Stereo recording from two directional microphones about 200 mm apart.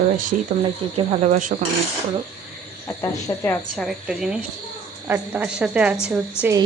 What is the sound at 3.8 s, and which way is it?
A woman's voice, centre (ahead or behind).